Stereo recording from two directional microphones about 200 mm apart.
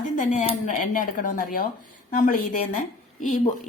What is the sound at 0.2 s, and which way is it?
A woman's voice, 35° left (ahead or behind).